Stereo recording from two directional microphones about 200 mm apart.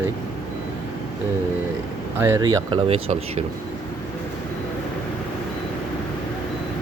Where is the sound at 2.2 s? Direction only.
15° right (ahead or behind).